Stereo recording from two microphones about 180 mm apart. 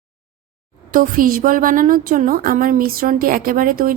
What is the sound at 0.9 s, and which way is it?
A woman's voice, 50° right (ahead or behind).